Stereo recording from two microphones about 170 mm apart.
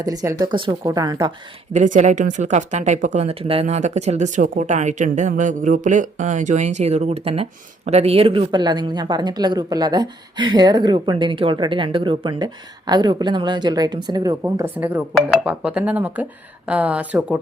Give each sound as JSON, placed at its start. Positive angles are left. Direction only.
{"t": 0.0, "sound": "speech", "side_deg": -20}
{"t": 1.7, "sound": "speech", "side_deg": -45}